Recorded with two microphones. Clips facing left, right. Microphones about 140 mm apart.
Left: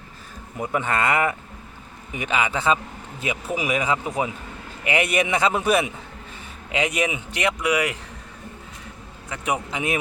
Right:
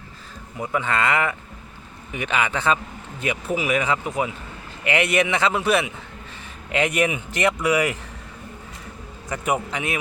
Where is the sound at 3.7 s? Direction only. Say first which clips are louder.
Even; 20° left (ahead or behind).